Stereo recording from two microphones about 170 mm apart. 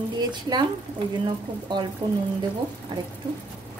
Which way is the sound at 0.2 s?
25° right (ahead or behind).